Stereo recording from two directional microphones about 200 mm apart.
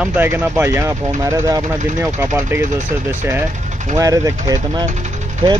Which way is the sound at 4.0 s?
15° right (ahead or behind).